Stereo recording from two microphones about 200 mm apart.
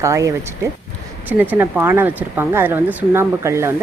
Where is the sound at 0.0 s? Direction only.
15° right (ahead or behind).